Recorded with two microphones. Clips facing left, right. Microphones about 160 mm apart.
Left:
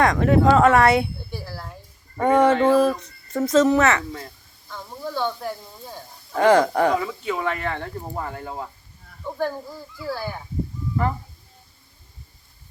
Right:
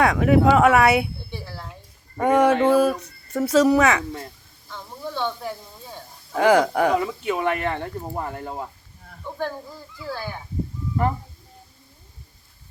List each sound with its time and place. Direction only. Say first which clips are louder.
0.0 s speech: even; 5° right (ahead or behind)
1.3 s speech: left 1 dB; 5° left (ahead or behind)
2.1 s speech: even; 10° right (ahead or behind)
4.7 s speech: left 2 dB; 5° left (ahead or behind)
7.0 s speech: right 2 dB; 20° right (ahead or behind)
9.2 s speech: left 3 dB; 5° left (ahead or behind)